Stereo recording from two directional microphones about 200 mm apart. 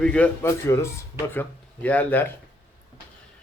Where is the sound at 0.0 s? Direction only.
5° left (ahead or behind).